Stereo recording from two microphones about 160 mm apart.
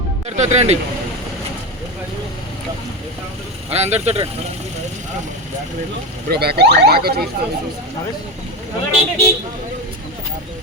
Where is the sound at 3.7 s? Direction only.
40° right (ahead or behind).